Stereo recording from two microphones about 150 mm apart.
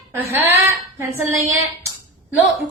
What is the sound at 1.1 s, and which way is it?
Female singing, 20° right (ahead or behind).